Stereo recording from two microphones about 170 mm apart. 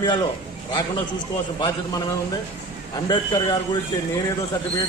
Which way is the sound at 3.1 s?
25° left (ahead or behind).